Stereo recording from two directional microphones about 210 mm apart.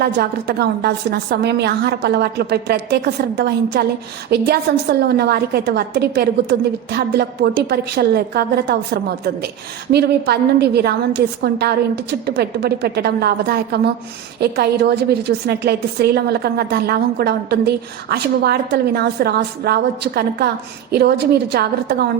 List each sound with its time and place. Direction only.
0.0 s a woman's voice: 50° right (ahead or behind)